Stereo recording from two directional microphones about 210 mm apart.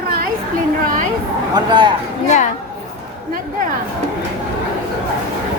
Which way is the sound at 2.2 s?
35° left (ahead or behind).